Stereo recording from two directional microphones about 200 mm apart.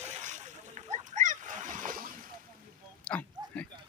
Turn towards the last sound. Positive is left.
turn(degrees=5)  # may be behind; listen again after turning